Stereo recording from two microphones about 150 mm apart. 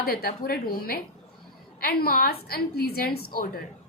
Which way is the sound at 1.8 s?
90° left.